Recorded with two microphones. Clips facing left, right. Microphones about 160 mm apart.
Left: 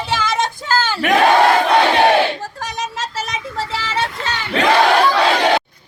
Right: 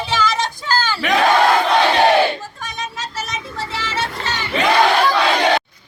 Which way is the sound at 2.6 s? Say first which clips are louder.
Left 4 dB; 85° left.